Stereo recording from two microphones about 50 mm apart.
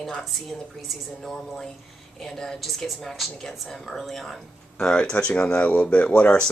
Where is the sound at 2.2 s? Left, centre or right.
Centre.